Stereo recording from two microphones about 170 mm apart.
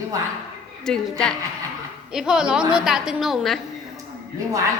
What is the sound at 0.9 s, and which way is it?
A woman's voice, 5° left (ahead or behind).